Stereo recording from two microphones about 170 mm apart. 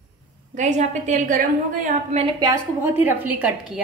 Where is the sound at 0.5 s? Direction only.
45° right (ahead or behind).